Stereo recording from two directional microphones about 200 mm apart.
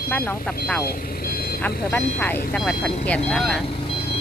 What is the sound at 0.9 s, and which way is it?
Vehicle, 50° left (ahead or behind).